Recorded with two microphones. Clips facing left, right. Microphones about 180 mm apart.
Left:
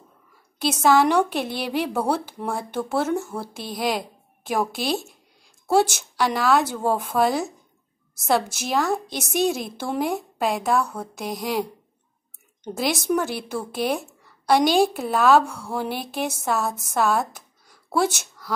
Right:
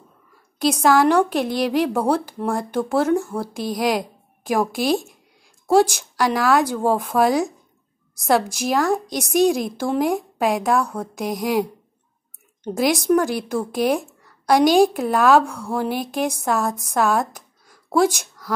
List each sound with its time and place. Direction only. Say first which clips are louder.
0.6 s a woman's voice: right 2 dB; 5° left (ahead or behind)
12.6 s a woman's voice: right 5 dB; centre (ahead or behind)